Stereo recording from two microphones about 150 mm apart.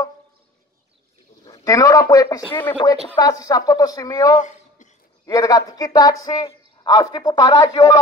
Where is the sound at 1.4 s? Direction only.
25° left (ahead or behind).